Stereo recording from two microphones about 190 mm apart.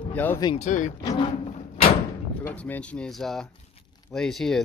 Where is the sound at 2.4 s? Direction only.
10° left (ahead or behind).